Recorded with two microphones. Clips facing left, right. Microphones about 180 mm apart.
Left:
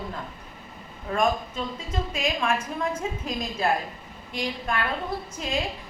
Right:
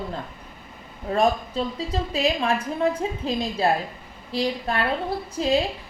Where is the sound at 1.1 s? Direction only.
35° right (ahead or behind).